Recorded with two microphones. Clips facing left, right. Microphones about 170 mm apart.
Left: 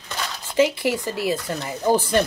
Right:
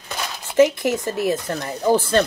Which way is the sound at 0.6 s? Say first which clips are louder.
Right 3 dB; 10° left (ahead or behind).